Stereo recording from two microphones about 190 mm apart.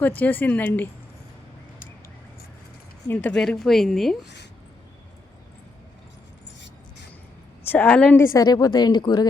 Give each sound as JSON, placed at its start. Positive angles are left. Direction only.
{"t": 0.0, "sound": "speech", "side_deg": 10}
{"t": 3.1, "sound": "a woman's voice", "side_deg": 10}
{"t": 7.7, "sound": "speech", "side_deg": 10}
{"t": 8.3, "sound": "speech", "side_deg": 20}